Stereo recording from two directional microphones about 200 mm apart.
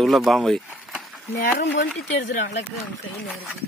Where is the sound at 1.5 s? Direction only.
65° left (ahead or behind).